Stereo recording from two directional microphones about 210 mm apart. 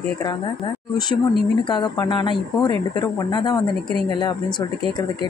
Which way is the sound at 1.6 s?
20° left (ahead or behind).